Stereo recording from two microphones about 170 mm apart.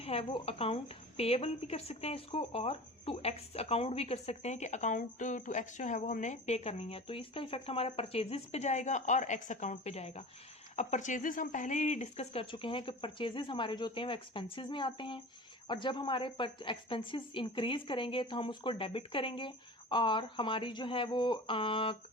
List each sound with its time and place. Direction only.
0.0 s a woman's voice: 35° left (ahead or behind)